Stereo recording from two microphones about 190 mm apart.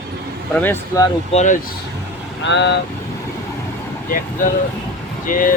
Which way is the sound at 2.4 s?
70° left (ahead or behind).